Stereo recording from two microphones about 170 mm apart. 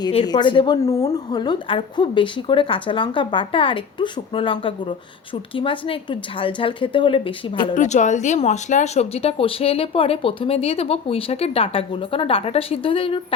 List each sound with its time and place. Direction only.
0.3 s a woman's voice: 25° left (ahead or behind)
0.8 s a woman's voice: 20° left (ahead or behind)
7.8 s speech: 45° left (ahead or behind)